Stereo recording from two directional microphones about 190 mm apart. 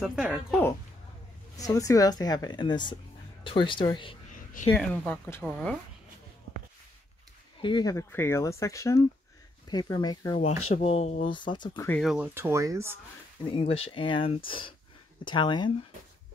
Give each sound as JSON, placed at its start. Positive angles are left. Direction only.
{"t": 0.0, "sound": "speech", "side_deg": -5}
{"t": 1.6, "sound": "speech", "side_deg": 20}
{"t": 4.7, "sound": "speech", "side_deg": 5}
{"t": 7.6, "sound": "speech", "side_deg": 20}
{"t": 10.4, "sound": "speech", "side_deg": 30}
{"t": 11.9, "sound": "speech", "side_deg": 0}
{"t": 12.4, "sound": "speech", "side_deg": -15}
{"t": 13.5, "sound": "speech", "side_deg": 30}